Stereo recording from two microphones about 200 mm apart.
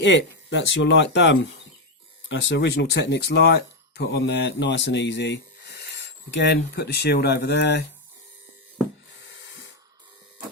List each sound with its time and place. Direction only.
0.0 s speech: 65° left (ahead or behind)